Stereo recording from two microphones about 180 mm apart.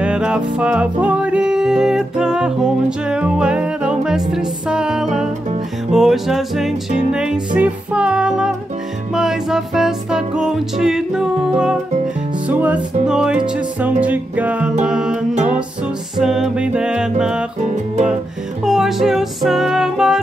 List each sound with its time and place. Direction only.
0.0 s music: 5° right (ahead or behind)
17.6 s music: 40° right (ahead or behind)
18.6 s music: centre (ahead or behind)